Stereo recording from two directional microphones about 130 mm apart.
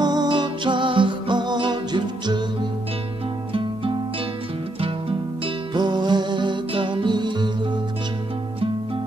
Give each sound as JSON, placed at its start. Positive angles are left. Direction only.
{"t": 0.0, "sound": "music", "side_deg": -35}
{"t": 4.7, "sound": "music", "side_deg": -45}